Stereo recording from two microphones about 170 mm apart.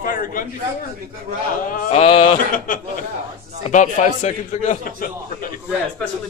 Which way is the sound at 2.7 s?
55° left (ahead or behind).